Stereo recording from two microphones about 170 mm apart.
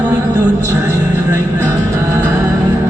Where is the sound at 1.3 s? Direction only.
15° right (ahead or behind).